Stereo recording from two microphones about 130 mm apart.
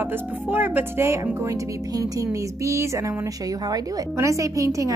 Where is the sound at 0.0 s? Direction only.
15° right (ahead or behind).